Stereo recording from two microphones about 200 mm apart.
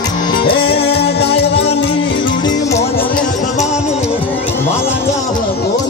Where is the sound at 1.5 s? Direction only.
30° left (ahead or behind).